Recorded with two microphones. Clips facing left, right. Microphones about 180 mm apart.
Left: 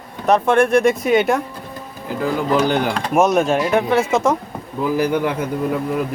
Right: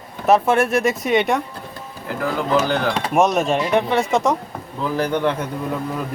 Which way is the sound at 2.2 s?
15° left (ahead or behind).